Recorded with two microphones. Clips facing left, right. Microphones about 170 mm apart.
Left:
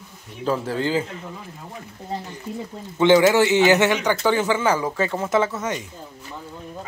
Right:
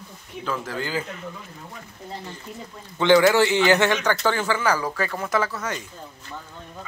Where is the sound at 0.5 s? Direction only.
30° left (ahead or behind).